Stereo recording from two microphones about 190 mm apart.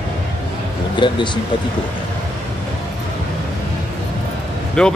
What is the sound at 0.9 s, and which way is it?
Speech, 25° left (ahead or behind).